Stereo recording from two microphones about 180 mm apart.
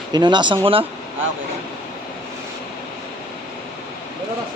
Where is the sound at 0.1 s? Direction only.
25° right (ahead or behind).